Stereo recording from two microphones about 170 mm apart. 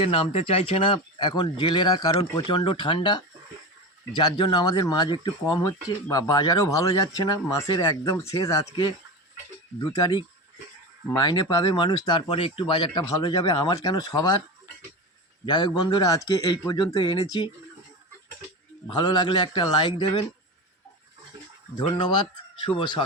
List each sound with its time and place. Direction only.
0.0 s speech: 35° left (ahead or behind)
9.9 s speech: 25° left (ahead or behind)
15.4 s speech: 25° left (ahead or behind)
18.9 s speech: 25° left (ahead or behind)
21.8 s speech: 25° left (ahead or behind)